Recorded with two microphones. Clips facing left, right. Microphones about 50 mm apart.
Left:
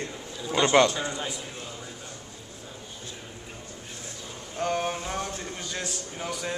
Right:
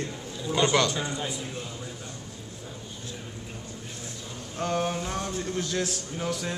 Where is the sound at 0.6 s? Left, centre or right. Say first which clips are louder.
Left 4 dB; left.